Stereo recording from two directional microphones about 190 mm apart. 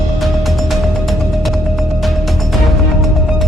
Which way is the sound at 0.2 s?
Centre (ahead or behind).